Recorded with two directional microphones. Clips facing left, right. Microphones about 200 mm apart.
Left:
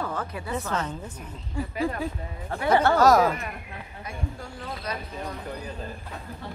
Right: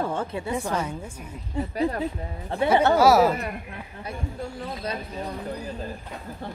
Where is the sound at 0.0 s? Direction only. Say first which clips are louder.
Right 4 dB; 25° right (ahead or behind).